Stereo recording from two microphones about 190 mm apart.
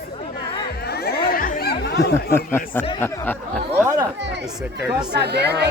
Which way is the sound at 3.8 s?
15° right (ahead or behind).